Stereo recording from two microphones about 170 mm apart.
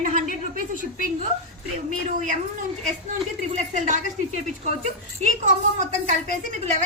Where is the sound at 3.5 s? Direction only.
45° right (ahead or behind).